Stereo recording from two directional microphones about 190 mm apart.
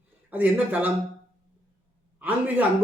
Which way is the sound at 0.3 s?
10° right (ahead or behind).